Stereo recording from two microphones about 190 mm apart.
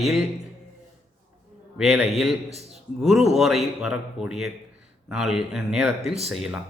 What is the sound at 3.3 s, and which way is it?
A man's voice, centre (ahead or behind).